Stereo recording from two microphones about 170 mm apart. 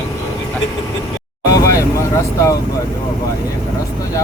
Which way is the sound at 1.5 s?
15° left (ahead or behind).